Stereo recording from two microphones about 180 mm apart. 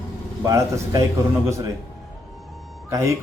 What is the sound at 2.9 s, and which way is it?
Speech, 15° right (ahead or behind).